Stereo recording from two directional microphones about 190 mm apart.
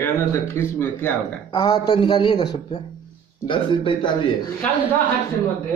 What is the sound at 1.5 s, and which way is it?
Speech, 25° left (ahead or behind).